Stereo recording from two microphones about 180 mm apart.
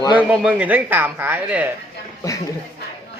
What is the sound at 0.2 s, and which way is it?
Speech, 5° right (ahead or behind).